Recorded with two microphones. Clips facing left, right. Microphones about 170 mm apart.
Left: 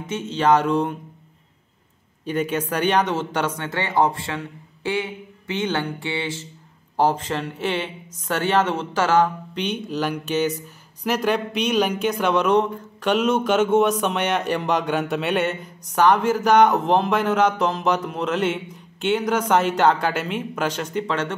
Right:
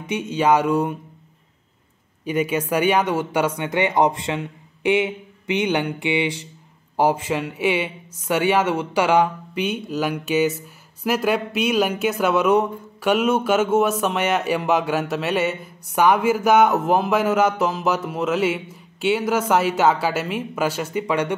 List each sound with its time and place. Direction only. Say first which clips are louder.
0.0 s speech: right 1 dB; 10° right (ahead or behind)
2.2 s speech: right 2 dB; 10° right (ahead or behind)